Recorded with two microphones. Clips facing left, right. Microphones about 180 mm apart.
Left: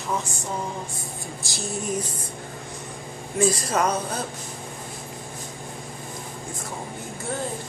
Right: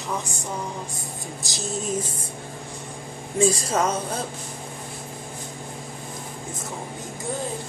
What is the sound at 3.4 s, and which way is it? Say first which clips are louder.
Speech: right 1 dB; 25° right (ahead or behind).